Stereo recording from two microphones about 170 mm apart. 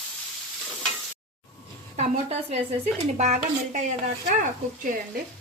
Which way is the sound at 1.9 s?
40° right (ahead or behind).